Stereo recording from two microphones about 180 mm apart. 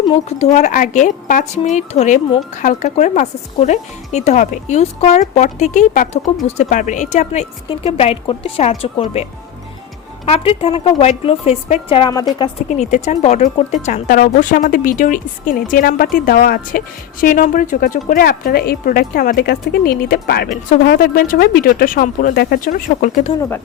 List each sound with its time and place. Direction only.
0.3 s a woman's voice: 35° left (ahead or behind)
10.2 s speech: 30° left (ahead or behind)
12.6 s a woman's voice: 40° left (ahead or behind)